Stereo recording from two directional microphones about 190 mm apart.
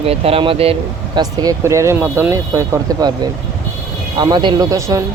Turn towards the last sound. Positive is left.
turn(degrees=-15)  # may be behind; listen again after turning